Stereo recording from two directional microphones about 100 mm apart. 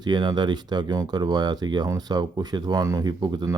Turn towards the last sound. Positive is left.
turn(degrees=-45)  # may be behind; listen again after turning